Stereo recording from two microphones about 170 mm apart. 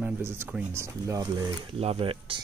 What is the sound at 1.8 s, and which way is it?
Speech, 35° right (ahead or behind).